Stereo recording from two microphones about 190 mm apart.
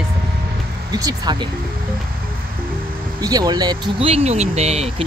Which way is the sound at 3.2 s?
20° right (ahead or behind).